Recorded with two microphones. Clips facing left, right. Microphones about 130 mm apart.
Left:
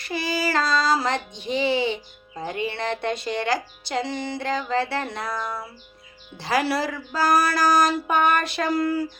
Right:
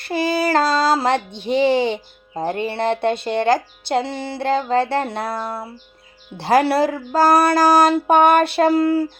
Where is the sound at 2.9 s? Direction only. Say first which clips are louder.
Right 7 dB; 60° right (ahead or behind).